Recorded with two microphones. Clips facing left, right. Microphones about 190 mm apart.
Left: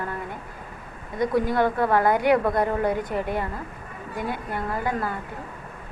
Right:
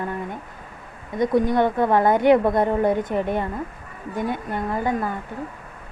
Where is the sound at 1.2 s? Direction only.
20° right (ahead or behind).